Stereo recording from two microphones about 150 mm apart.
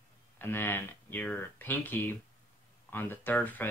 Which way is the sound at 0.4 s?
15° left (ahead or behind).